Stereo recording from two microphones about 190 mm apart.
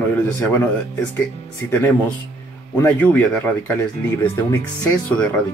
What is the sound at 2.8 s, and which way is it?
A man's voice, 10° left (ahead or behind).